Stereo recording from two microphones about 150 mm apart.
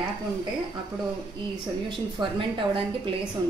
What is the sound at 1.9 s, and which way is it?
Speech, 35° right (ahead or behind).